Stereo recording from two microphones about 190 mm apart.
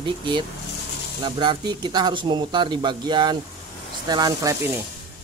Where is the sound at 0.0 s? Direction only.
25° right (ahead or behind).